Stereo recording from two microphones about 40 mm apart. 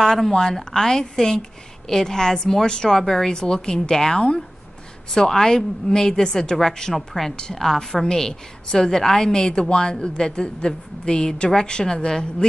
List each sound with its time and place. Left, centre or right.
0.0 s a woman's voice: centre
3.0 s a woman's voice: centre